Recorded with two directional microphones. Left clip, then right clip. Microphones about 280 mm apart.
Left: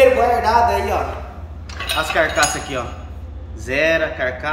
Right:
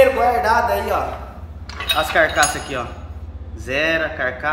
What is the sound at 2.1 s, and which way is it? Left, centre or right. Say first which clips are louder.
Speech: even; centre.